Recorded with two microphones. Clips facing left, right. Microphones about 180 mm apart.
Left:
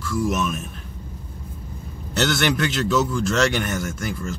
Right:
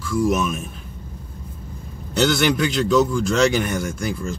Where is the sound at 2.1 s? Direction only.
Centre (ahead or behind).